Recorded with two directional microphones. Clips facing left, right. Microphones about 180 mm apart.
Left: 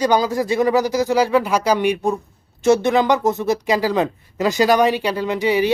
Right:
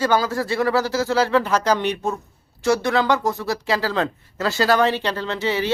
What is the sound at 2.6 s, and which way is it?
Speech, 20° left (ahead or behind).